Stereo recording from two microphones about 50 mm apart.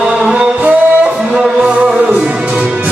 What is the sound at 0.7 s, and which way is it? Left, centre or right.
Music, right.